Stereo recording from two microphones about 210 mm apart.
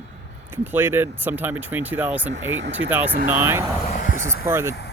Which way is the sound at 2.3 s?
55° right (ahead or behind).